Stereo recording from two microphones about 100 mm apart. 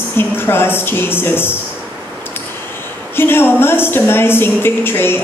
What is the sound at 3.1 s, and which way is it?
A woman's voice, 20° left (ahead or behind).